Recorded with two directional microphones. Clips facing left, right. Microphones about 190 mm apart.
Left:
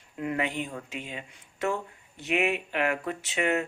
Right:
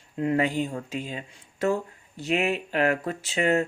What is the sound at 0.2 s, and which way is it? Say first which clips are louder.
Speech: right 6 dB; 35° right (ahead or behind).